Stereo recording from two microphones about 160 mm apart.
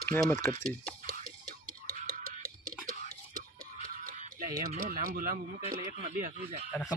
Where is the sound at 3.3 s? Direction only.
60° right (ahead or behind).